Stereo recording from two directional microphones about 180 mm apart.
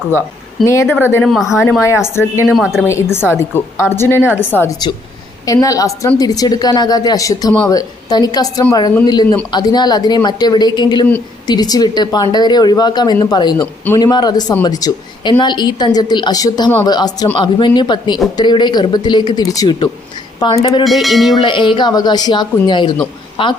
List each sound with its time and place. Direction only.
0.6 s a woman's voice: 15° left (ahead or behind)
1.2 s speech: centre (ahead or behind)
1.5 s a woman's voice: 15° left (ahead or behind)
20.8 s speech: centre (ahead or behind)
21.4 s a woman's voice: 25° left (ahead or behind)